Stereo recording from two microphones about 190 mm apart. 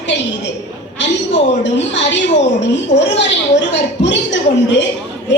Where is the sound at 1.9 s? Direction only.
65° left (ahead or behind).